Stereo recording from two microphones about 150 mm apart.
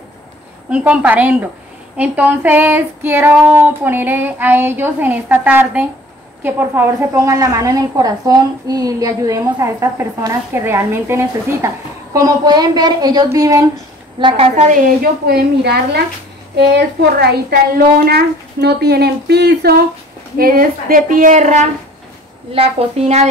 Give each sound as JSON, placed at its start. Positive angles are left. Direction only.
{"t": 0.7, "sound": "child singing", "side_deg": -10}
{"t": 6.4, "sound": "a woman's voice", "side_deg": -15}
{"t": 14.2, "sound": "a woman's voice", "side_deg": -40}
{"t": 15.2, "sound": "a woman's voice", "side_deg": -90}
{"t": 20.3, "sound": "speech", "side_deg": -75}
{"t": 22.5, "sound": "a woman's voice", "side_deg": -40}